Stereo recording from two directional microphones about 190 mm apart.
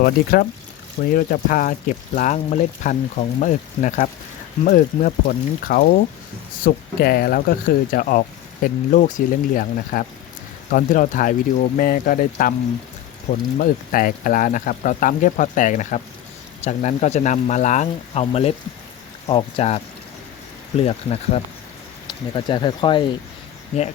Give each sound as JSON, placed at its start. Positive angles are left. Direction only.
{"t": 0.0, "sound": "speech", "side_deg": 50}
{"t": 13.6, "sound": "speech", "side_deg": 45}